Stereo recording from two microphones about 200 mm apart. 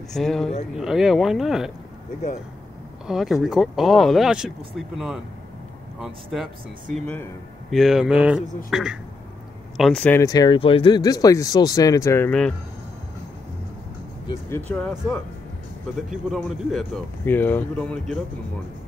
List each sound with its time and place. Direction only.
0.1 s speech: centre (ahead or behind)
3.1 s speech: centre (ahead or behind)
10.2 s speech: 20° left (ahead or behind)
14.7 s speech: 5° left (ahead or behind)